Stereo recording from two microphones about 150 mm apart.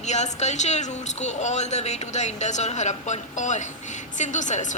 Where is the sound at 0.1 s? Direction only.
50° left (ahead or behind).